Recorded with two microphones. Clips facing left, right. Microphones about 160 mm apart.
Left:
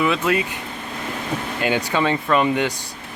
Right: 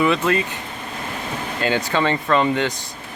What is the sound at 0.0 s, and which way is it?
Speech, centre (ahead or behind).